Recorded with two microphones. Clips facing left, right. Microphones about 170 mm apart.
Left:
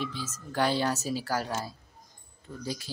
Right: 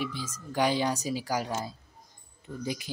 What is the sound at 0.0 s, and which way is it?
Speech, 10° right (ahead or behind).